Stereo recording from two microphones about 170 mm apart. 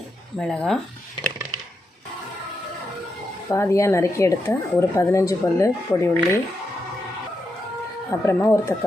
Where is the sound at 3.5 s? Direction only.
15° left (ahead or behind).